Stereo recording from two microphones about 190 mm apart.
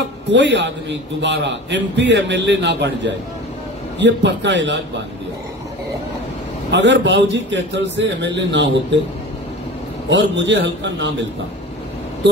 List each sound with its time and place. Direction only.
0.3 s a man's voice: 70° right (ahead or behind)
6.7 s a man's voice: 70° right (ahead or behind)
10.0 s a man's voice: 70° right (ahead or behind)